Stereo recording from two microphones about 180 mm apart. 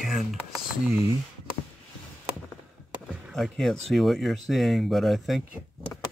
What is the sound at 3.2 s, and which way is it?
Speech, centre (ahead or behind).